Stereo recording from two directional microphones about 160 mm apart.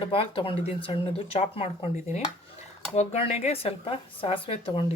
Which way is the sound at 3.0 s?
40° left (ahead or behind).